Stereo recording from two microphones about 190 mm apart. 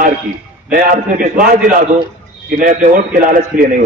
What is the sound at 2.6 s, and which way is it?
Speech, 45° right (ahead or behind).